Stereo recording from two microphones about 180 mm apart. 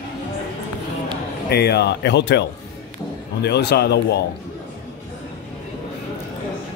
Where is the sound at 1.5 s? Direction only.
65° left (ahead or behind).